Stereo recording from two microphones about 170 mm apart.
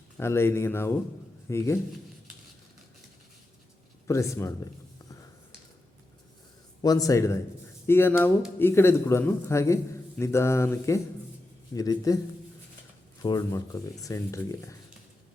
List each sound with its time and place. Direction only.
0.2 s a man's voice: 15° left (ahead or behind)
4.0 s a sound: 15° left (ahead or behind)
6.8 s a man's voice: 20° left (ahead or behind)
13.2 s speech: 20° left (ahead or behind)